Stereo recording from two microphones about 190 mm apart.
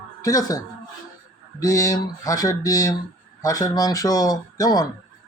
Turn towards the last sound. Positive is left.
turn(degrees=20)  # may be behind; listen again after turning